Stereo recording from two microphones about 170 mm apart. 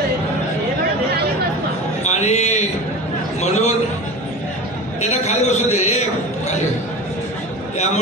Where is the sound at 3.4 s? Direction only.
40° left (ahead or behind).